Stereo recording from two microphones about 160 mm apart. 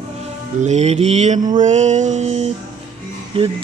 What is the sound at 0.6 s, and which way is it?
Music, 45° right (ahead or behind).